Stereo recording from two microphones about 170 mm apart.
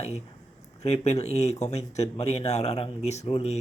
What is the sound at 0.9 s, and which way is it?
A man's voice, 35° left (ahead or behind).